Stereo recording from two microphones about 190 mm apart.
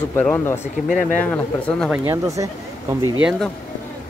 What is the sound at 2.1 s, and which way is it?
Speech, 15° right (ahead or behind).